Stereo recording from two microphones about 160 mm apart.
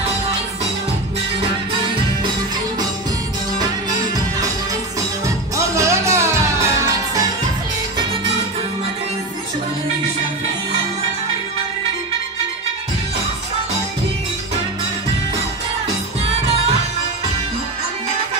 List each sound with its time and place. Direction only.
5.2 s music: 20° right (ahead or behind)